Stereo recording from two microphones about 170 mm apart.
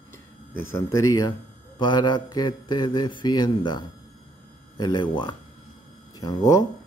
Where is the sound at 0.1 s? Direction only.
15° left (ahead or behind).